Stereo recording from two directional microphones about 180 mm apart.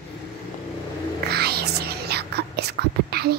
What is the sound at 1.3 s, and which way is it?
Whispering, 60° right (ahead or behind).